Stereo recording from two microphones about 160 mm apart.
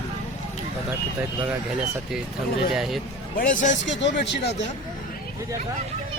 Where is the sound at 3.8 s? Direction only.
90° left.